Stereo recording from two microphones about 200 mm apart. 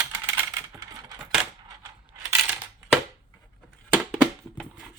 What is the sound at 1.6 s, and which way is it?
Coin, 15° right (ahead or behind).